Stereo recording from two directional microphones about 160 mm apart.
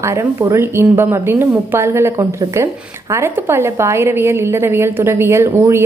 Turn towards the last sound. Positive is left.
turn(degrees=-15)  # may be behind; listen again after turning